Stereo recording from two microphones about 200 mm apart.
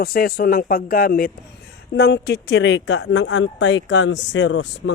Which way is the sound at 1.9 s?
55° left (ahead or behind).